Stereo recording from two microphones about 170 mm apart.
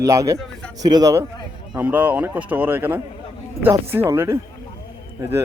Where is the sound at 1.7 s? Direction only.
10° right (ahead or behind).